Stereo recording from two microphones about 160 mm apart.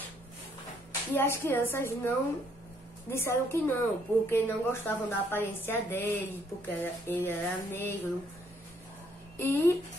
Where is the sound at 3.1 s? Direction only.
15° left (ahead or behind).